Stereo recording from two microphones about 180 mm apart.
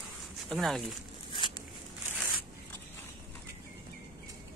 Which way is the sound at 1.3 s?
25° left (ahead or behind).